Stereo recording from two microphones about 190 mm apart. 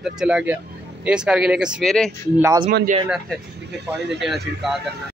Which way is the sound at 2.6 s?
50° right (ahead or behind).